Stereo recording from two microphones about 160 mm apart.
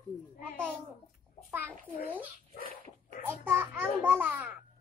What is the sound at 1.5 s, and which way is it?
Speech, 10° right (ahead or behind).